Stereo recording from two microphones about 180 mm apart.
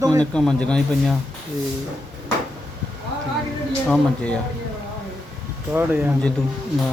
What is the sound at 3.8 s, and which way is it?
Speech, 5° left (ahead or behind).